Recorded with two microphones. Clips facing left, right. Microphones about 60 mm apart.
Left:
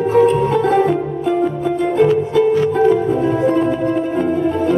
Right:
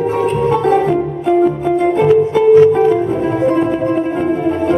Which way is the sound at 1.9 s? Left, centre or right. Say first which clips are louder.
Right 1 dB; right.